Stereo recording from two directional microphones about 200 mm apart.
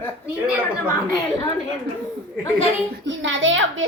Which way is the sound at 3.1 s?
70° right (ahead or behind).